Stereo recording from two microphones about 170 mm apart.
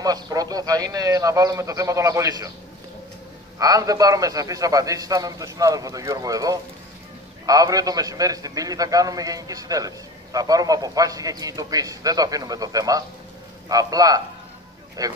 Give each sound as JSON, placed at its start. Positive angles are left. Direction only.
{"t": 0.0, "sound": "a man's voice", "side_deg": -20}
{"t": 3.5, "sound": "a man's voice", "side_deg": -20}